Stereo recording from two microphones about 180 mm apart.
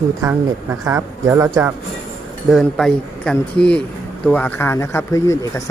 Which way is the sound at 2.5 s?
Centre (ahead or behind).